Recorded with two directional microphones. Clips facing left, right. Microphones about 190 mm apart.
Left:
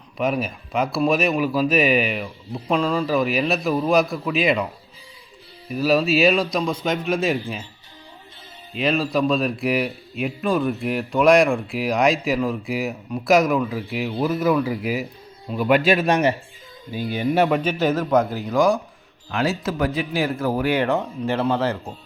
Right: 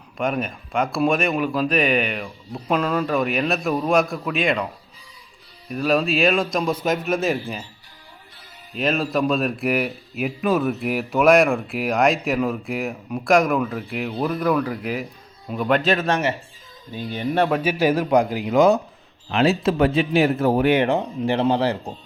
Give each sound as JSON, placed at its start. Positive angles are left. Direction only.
{"t": 0.2, "sound": "a man's voice", "side_deg": 0}
{"t": 8.7, "sound": "a man's voice", "side_deg": 0}
{"t": 17.6, "sound": "a man's voice", "side_deg": -10}